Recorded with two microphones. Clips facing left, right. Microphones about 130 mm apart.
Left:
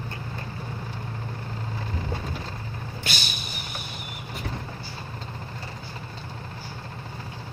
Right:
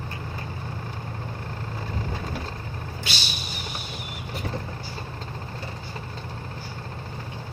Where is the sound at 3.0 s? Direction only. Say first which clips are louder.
Left 1 dB; 50° left (ahead or behind).